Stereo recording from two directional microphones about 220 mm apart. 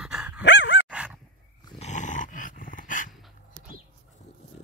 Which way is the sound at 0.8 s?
5° right (ahead or behind).